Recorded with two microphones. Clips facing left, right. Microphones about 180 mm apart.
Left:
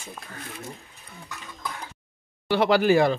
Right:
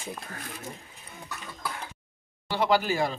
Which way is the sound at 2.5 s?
70° left (ahead or behind).